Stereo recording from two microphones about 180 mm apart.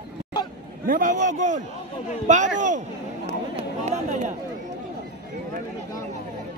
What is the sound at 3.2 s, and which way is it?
Run, 35° right (ahead or behind).